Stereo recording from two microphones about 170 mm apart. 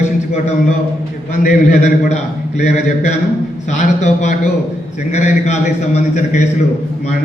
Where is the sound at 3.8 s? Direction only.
45° left (ahead or behind).